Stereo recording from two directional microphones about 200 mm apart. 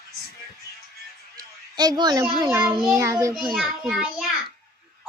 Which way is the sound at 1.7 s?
20° right (ahead or behind).